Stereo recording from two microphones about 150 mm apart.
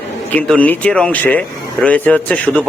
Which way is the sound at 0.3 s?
10° left (ahead or behind).